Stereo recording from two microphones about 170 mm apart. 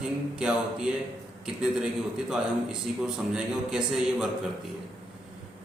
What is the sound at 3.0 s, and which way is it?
A man's voice, 5° right (ahead or behind).